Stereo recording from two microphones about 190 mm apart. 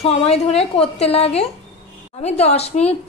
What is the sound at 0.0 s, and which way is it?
A woman's voice, 30° left (ahead or behind).